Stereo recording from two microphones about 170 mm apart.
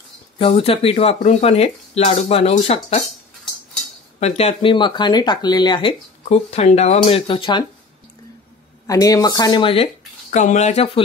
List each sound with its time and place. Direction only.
0.4 s speech: 35° left (ahead or behind)
4.2 s speech: 40° left (ahead or behind)
6.2 s speech: 40° left (ahead or behind)
8.8 s speech: 20° left (ahead or behind)
10.3 s speech: 45° left (ahead or behind)